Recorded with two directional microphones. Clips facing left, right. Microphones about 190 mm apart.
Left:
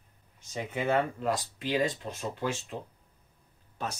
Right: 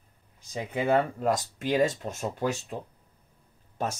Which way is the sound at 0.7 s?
35° right (ahead or behind).